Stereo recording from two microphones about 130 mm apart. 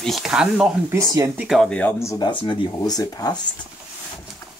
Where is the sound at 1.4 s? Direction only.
Centre (ahead or behind).